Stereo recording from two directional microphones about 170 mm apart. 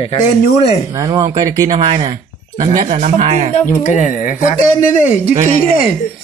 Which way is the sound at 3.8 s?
50° left (ahead or behind).